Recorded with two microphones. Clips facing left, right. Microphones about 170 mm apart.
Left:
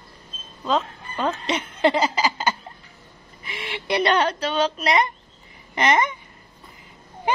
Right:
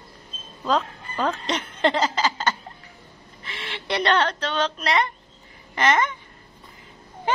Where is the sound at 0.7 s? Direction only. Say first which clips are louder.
Even; centre (ahead or behind); by 6.1 s 15° left (ahead or behind).